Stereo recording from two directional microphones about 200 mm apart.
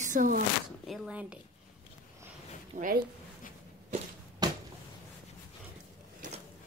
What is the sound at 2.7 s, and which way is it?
Speech, 40° right (ahead or behind).